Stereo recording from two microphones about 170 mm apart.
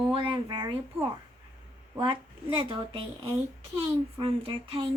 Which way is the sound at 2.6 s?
30° right (ahead or behind).